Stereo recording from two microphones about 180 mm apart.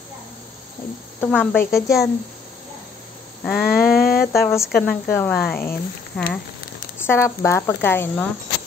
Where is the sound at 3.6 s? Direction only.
55° left (ahead or behind).